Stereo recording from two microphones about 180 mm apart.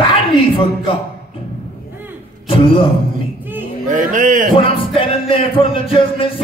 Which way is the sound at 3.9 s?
45° right (ahead or behind).